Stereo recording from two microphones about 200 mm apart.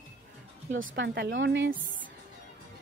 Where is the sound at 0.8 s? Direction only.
70° right (ahead or behind).